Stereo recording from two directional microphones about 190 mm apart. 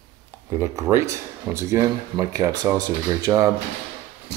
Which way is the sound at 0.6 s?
15° right (ahead or behind).